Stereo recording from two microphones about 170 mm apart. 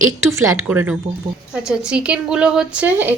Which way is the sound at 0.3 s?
15° right (ahead or behind).